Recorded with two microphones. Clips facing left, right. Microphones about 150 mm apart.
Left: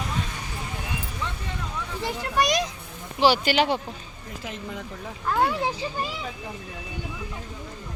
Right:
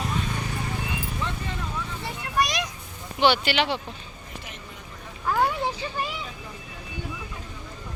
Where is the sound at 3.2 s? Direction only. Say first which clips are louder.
Left 2 dB; 40° left (ahead or behind).